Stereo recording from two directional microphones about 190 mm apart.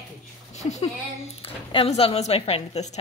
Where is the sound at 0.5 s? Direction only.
35° left (ahead or behind).